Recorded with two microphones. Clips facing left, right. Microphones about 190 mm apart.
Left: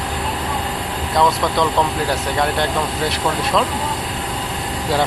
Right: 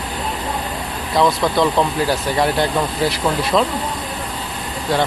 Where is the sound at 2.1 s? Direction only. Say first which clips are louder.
Right 2 dB; 5° right (ahead or behind).